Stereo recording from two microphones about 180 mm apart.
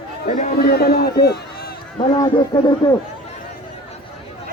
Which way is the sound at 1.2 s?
60° left (ahead or behind).